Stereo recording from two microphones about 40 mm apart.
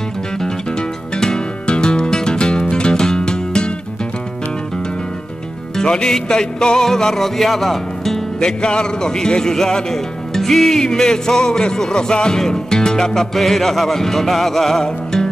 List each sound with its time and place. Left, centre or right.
1.1 s music: centre
2.0 s music: centre
2.3 s music: left
5.8 s a man's voice: centre
8.4 s a man's voice: left; by 10.8 s centre
10.8 s music: centre
13.3 s a man's voice: centre